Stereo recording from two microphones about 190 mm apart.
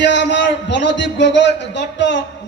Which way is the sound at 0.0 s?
70° left (ahead or behind).